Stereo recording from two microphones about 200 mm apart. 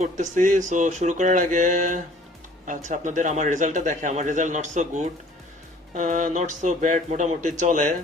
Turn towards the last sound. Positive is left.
turn(degrees=-40)  # may be behind; listen again after turning